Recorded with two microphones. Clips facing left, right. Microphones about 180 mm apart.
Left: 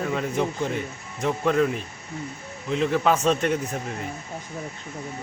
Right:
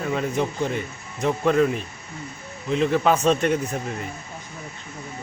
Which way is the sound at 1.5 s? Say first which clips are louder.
Right 2 dB; centre (ahead or behind).